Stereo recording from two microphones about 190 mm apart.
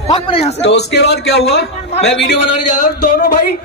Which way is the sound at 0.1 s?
30° left (ahead or behind).